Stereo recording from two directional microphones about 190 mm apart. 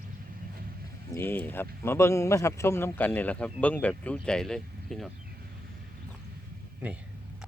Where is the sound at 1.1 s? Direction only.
10° left (ahead or behind).